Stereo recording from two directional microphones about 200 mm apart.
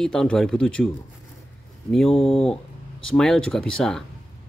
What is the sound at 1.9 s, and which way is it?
Speech, centre (ahead or behind).